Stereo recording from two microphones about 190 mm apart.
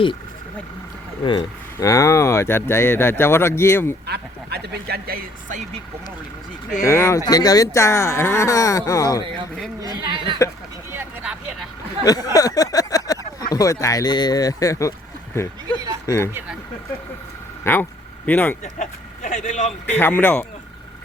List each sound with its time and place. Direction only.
1.2 s speech: 25° left (ahead or behind)
4.0 s speech: 60° right (ahead or behind)
6.8 s speech: 15° left (ahead or behind)
9.8 s speech: 20° right (ahead or behind)
10.9 s vehicle: 5° right (ahead or behind)
12.0 s a sound: 20° left (ahead or behind)
13.1 s speech: 20° left (ahead or behind)
16.0 s speech: 15° left (ahead or behind)
17.6 s speech: 10° left (ahead or behind)
18.6 s speech: 40° left (ahead or behind)
19.9 s speech: 10° left (ahead or behind)